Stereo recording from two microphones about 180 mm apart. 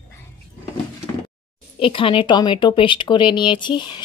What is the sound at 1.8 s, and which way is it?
Speech, 30° left (ahead or behind).